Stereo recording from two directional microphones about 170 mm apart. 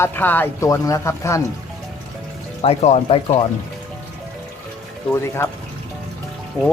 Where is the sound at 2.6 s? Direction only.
40° left (ahead or behind).